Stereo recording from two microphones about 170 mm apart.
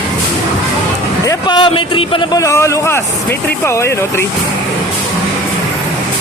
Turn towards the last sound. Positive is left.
turn(degrees=15)  # may be behind; listen again after turning